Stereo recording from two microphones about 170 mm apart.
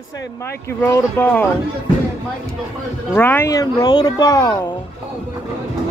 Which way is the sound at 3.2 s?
10° left (ahead or behind).